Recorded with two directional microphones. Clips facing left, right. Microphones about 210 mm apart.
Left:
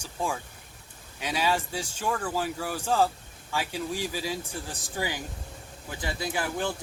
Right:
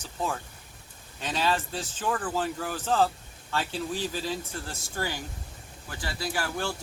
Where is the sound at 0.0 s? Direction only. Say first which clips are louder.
Even; 10° left (ahead or behind).